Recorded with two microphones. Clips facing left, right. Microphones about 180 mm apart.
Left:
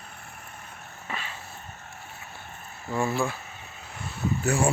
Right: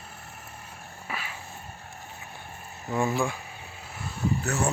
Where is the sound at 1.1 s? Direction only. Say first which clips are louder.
Even; 10° right (ahead or behind).